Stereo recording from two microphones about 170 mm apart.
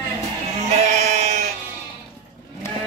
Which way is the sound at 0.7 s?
40° right (ahead or behind).